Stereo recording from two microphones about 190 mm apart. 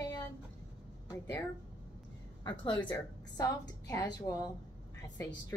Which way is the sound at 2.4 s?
25° left (ahead or behind).